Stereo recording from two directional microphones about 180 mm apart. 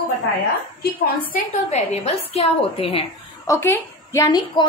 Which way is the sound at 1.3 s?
40° left (ahead or behind).